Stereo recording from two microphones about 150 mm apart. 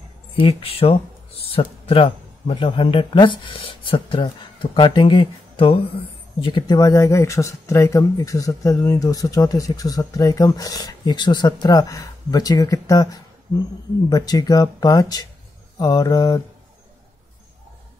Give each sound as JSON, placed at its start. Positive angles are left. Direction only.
{"t": 0.4, "sound": "a man's voice", "side_deg": 40}